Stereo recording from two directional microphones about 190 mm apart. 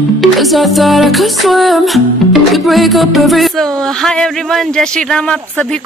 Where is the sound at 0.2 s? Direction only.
Centre (ahead or behind).